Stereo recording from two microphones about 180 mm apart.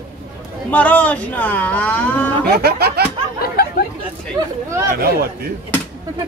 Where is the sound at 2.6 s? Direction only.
60° right (ahead or behind).